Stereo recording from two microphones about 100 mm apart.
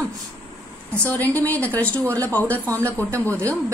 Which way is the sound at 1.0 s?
15° left (ahead or behind).